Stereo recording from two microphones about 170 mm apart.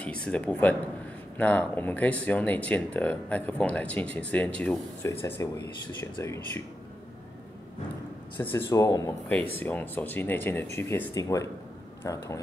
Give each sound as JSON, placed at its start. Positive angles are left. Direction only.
{"t": 0.0, "sound": "speech", "side_deg": 5}
{"t": 5.0, "sound": "speech", "side_deg": 20}
{"t": 8.4, "sound": "speech", "side_deg": 10}
{"t": 9.3, "sound": "speech", "side_deg": 10}